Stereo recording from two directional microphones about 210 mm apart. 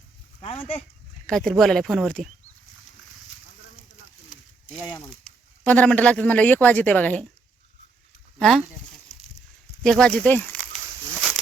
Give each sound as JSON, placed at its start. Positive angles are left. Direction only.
{"t": 0.4, "sound": "speech", "side_deg": 25}
{"t": 1.3, "sound": "speech", "side_deg": 0}
{"t": 4.9, "sound": "speech", "side_deg": 5}
{"t": 8.4, "sound": "speech", "side_deg": 0}
{"t": 9.8, "sound": "speech", "side_deg": 5}